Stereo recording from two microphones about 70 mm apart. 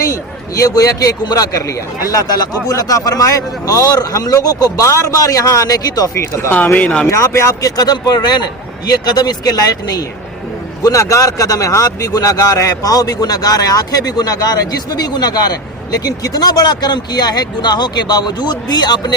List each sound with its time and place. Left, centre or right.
0.0 s a man's voice: left
4.9 s speech: left
6.5 s speech: left
7.1 s speech: left
7.8 s speech: left
10.8 s speech: left